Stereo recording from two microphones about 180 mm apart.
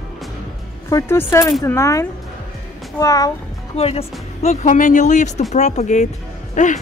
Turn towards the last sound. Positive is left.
turn(degrees=45)  # may be behind; listen again after turning